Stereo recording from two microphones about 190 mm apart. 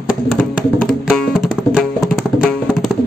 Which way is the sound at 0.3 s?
5° right (ahead or behind).